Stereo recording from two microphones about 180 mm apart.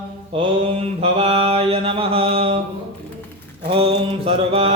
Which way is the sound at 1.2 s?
30° right (ahead or behind).